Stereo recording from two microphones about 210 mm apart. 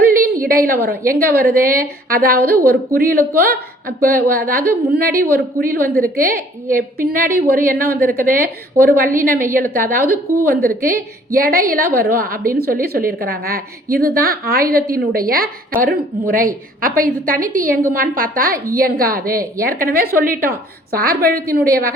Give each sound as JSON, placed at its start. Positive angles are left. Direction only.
{"t": 0.1, "sound": "a woman's voice", "side_deg": -40}